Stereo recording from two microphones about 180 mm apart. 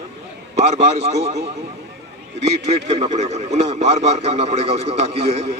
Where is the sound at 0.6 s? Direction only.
35° right (ahead or behind).